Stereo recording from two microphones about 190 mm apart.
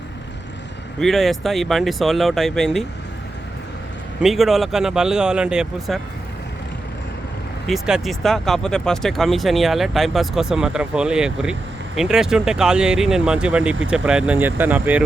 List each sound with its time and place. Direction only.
0.9 s speech: centre (ahead or behind)
4.2 s speech: centre (ahead or behind)
7.7 s speech: centre (ahead or behind)